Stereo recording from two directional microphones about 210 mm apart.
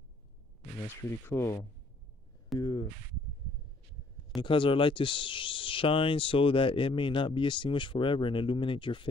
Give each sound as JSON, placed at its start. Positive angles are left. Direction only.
{"t": 1.2, "sound": "speech", "side_deg": 10}
{"t": 2.6, "sound": "a sound", "side_deg": 20}
{"t": 4.4, "sound": "speech", "side_deg": 25}